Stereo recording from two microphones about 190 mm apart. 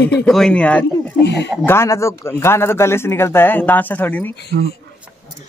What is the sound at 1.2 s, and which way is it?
Speech, 60° left (ahead or behind).